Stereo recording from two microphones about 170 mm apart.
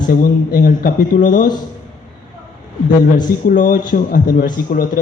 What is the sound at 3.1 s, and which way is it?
A man's voice, 50° left (ahead or behind).